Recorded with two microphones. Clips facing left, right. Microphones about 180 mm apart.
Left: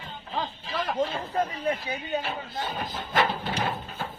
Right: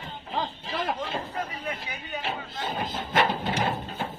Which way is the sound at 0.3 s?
25° right (ahead or behind).